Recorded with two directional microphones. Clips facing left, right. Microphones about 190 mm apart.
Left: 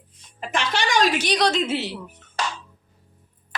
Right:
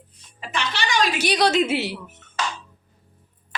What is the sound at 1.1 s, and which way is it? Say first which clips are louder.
Speech: right 2 dB; 10° right (ahead or behind).